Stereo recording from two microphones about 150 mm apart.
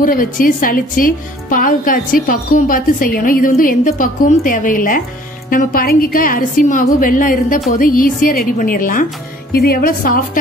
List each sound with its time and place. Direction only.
0.0 s a woman's voice: 65° left (ahead or behind)
9.5 s a woman's voice: 90° left; by 10.4 s 70° left (ahead or behind)